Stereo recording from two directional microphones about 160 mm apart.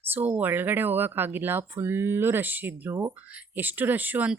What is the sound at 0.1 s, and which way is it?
Speech, 10° right (ahead or behind).